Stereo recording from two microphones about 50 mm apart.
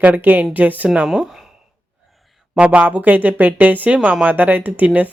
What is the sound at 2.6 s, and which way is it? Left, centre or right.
Speech, right.